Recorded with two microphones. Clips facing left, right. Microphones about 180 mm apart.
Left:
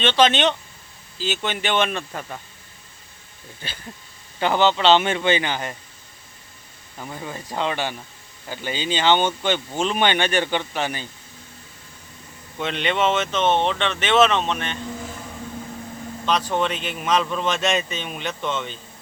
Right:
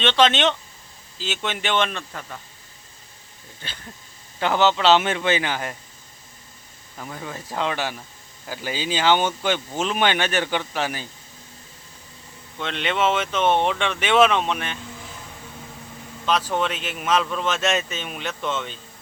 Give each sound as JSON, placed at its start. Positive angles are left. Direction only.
{"t": 0.0, "sound": "a man's voice", "side_deg": 0}
{"t": 4.4, "sound": "a man's voice", "side_deg": 0}
{"t": 7.0, "sound": "a man's voice", "side_deg": 5}
{"t": 12.5, "sound": "speech", "side_deg": 5}
{"t": 16.2, "sound": "a man's voice", "side_deg": -5}